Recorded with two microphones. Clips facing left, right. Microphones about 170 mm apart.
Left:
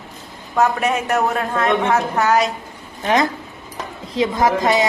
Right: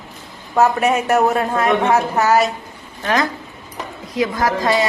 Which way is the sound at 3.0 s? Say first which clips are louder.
Left 2 dB; 25° left (ahead or behind).